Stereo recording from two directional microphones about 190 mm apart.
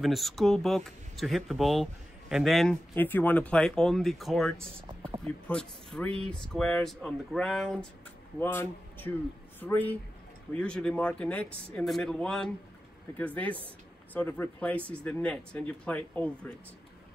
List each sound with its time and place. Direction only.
0.0 s speech: centre (ahead or behind)